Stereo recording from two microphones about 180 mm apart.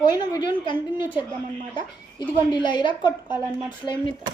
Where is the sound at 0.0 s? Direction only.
25° left (ahead or behind).